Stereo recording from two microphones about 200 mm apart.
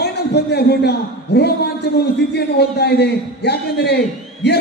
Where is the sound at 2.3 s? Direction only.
55° left (ahead or behind).